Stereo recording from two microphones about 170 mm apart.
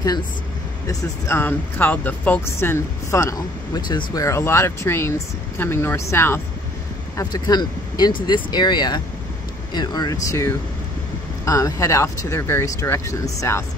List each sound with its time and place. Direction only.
0.8 s speech: 15° left (ahead or behind)